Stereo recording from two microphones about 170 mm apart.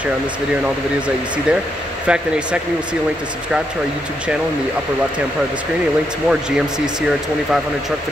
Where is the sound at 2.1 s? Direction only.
5° right (ahead or behind).